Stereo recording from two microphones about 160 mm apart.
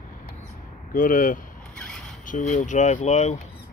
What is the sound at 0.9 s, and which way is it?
Speech, 55° left (ahead or behind).